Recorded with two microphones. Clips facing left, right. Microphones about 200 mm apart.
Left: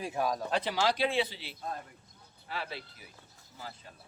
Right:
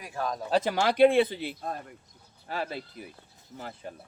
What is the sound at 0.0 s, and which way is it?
Speech, 20° left (ahead or behind).